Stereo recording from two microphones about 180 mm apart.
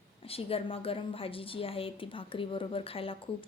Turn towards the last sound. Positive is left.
turn(degrees=30)  # may be behind; listen again after turning